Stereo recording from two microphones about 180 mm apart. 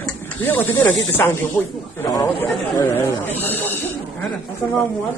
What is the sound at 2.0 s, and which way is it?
Speech, 15° left (ahead or behind).